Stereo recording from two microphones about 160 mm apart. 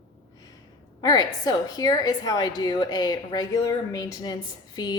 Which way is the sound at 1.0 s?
25° left (ahead or behind).